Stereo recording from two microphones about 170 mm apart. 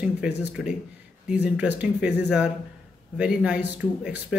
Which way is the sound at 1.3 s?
10° right (ahead or behind).